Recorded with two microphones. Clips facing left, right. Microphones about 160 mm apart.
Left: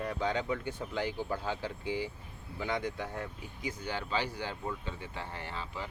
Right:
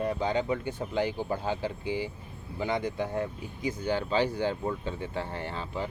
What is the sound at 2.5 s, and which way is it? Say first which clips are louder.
Speech: right 5 dB; 25° right (ahead or behind).